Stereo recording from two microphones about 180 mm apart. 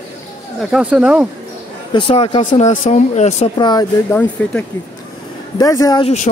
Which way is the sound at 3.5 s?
20° left (ahead or behind).